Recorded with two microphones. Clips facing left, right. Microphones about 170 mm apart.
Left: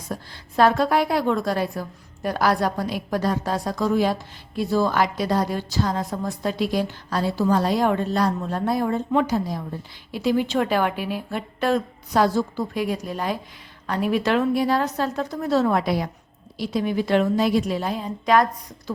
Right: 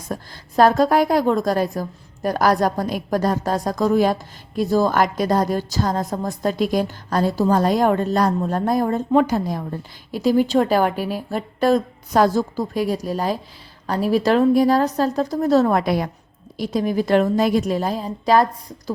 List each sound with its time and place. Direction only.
0.1 s a woman's voice: 40° right (ahead or behind)
10.1 s a woman's voice: 40° right (ahead or behind)